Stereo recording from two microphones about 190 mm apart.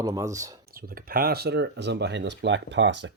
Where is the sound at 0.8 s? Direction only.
50° right (ahead or behind).